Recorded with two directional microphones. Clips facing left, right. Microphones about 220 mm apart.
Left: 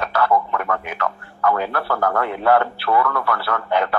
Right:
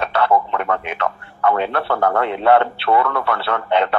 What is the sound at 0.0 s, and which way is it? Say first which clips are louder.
Speech: right 2 dB; 25° right (ahead or behind).